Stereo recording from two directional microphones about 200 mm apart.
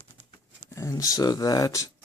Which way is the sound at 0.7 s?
15° left (ahead or behind).